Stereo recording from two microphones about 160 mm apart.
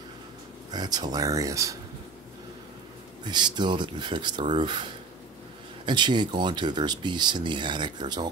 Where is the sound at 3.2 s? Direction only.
25° right (ahead or behind).